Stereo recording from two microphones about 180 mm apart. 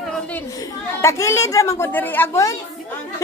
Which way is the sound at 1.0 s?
15° left (ahead or behind).